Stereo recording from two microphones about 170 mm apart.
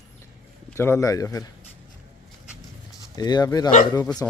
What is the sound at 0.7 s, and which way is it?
Speech, 15° left (ahead or behind).